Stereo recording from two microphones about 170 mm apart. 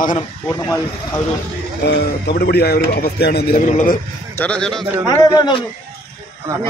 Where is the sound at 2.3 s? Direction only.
70° left (ahead or behind).